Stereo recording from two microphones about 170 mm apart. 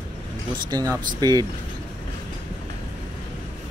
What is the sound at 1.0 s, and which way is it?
Speech, 25° right (ahead or behind).